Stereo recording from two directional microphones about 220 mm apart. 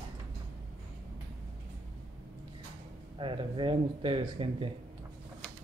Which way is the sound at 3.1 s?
25° right (ahead or behind).